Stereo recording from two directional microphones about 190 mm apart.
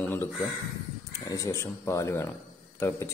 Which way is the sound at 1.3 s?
15° left (ahead or behind).